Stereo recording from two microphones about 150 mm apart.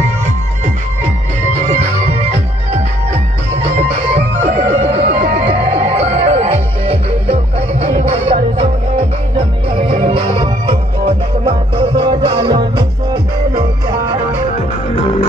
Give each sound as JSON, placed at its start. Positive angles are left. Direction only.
{"t": 3.6, "sound": "music", "side_deg": -45}